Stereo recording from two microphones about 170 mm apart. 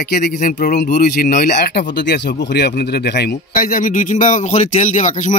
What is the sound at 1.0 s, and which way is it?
Speech, 70° left (ahead or behind).